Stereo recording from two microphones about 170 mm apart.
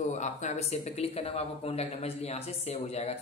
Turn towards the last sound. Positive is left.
turn(degrees=40)  # may be behind; listen again after turning